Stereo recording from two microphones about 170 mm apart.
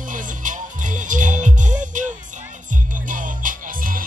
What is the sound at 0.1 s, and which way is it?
Music, 50° right (ahead or behind).